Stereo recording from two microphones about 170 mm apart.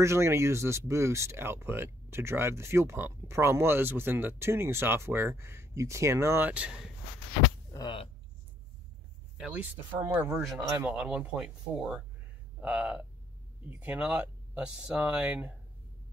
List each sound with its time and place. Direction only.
0.0 s speech: 15° right (ahead or behind)
7.7 s speech: 25° left (ahead or behind)
9.4 s speech: 10° right (ahead or behind)